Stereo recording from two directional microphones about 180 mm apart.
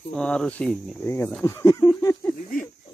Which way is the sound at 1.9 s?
15° left (ahead or behind).